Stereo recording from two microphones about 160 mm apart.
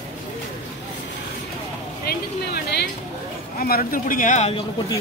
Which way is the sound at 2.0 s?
85° left.